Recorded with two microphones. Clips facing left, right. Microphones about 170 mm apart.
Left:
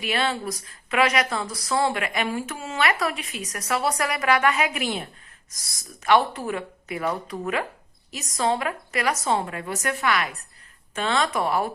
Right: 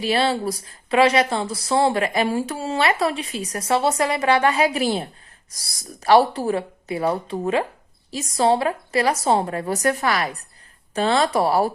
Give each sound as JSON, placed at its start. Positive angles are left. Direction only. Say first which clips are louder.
{"t": 0.0, "sound": "speech", "louder": "right 5 dB", "side_deg": -30}